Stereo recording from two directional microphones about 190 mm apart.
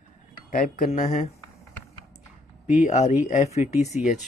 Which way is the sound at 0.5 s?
45° left (ahead or behind).